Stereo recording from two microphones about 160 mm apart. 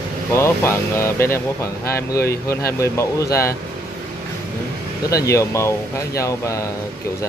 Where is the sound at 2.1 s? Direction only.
75° left (ahead or behind).